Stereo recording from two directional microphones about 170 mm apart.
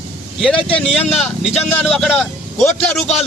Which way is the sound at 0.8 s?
Centre (ahead or behind).